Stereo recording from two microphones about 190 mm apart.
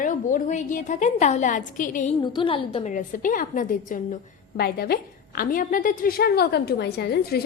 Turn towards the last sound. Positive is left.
turn(degrees=60)  # may be behind; listen again after turning